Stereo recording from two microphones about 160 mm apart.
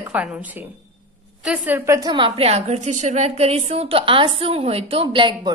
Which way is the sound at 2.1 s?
35° right (ahead or behind).